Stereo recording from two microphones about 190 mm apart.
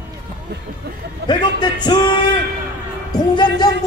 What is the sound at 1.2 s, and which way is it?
Speech, 25° left (ahead or behind).